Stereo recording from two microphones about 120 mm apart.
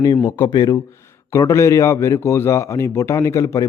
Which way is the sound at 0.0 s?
40° left (ahead or behind).